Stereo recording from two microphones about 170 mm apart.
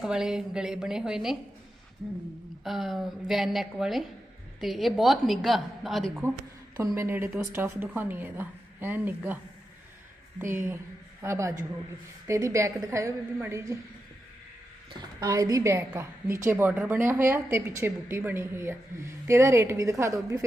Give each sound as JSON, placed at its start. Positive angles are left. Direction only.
{"t": 0.0, "sound": "a woman's voice", "side_deg": -5}
{"t": 2.6, "sound": "a woman's voice", "side_deg": 0}
{"t": 6.8, "sound": "a woman's voice", "side_deg": -15}
{"t": 10.5, "sound": "a woman's voice", "side_deg": -15}
{"t": 14.9, "sound": "a woman's voice", "side_deg": -20}